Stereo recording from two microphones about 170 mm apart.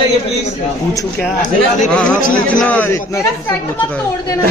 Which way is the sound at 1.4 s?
50° left (ahead or behind).